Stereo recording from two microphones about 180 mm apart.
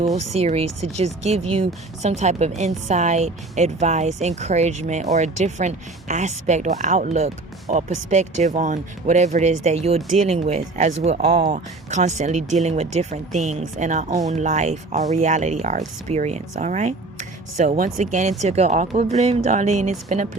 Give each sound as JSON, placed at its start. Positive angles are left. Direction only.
{"t": 0.3, "sound": "speech", "side_deg": -35}